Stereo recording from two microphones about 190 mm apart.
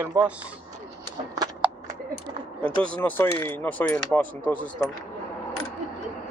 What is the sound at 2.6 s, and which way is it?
Speech, 5° left (ahead or behind).